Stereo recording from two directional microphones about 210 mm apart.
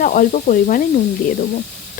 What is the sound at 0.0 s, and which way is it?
Speech, 40° left (ahead or behind).